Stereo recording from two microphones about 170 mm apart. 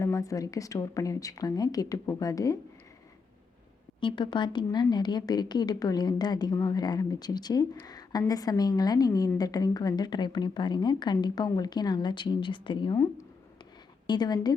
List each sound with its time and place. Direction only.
0.0 s a woman's voice: 20° left (ahead or behind)
4.0 s a woman's voice: 25° left (ahead or behind)
14.1 s a woman's voice: 25° left (ahead or behind)